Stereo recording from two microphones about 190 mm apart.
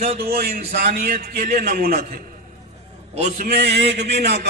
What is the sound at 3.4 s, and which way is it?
A man's voice, 60° right (ahead or behind).